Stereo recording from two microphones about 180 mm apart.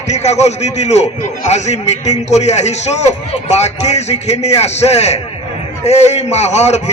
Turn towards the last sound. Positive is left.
turn(degrees=40)  # may be behind; listen again after turning